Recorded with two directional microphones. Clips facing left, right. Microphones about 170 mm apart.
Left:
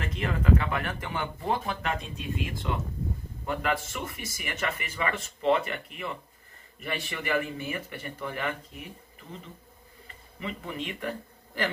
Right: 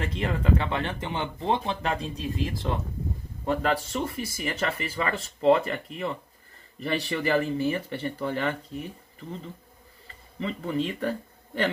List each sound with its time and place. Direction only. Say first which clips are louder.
0.0 s speech: right 1 dB; 30° right (ahead or behind)
10.4 s speech: right 7 dB; 35° right (ahead or behind)